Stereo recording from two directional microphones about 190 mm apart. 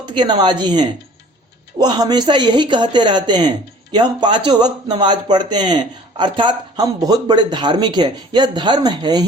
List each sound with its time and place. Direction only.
0.0 s speech: 25° right (ahead or behind)